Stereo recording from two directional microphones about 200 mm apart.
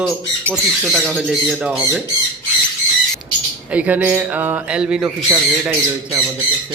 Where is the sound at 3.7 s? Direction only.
5° right (ahead or behind).